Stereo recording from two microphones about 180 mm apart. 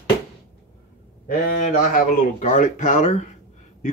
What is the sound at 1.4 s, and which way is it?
Speech, 50° left (ahead or behind).